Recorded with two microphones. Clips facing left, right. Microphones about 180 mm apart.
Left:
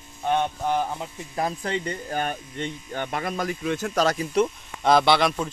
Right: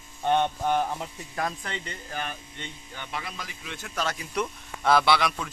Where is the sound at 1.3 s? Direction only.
30° left (ahead or behind).